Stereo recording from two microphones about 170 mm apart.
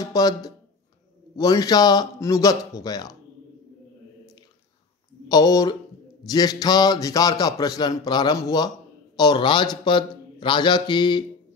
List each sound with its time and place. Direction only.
0.0 s speech: 20° left (ahead or behind)
5.3 s speech: 25° left (ahead or behind)